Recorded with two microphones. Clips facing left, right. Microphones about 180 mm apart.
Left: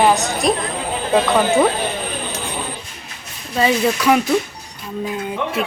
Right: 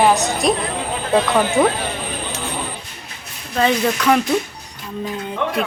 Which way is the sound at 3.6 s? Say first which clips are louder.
Left 1 dB; 5° left (ahead or behind).